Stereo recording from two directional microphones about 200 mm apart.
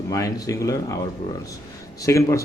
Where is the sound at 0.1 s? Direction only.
15° left (ahead or behind).